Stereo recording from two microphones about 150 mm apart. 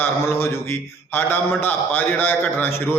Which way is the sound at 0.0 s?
15° left (ahead or behind).